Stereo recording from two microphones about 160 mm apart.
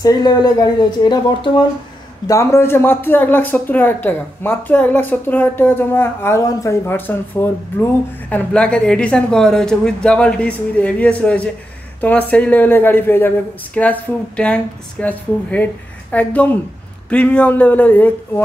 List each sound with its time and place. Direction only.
0.0 s speech: 25° left (ahead or behind)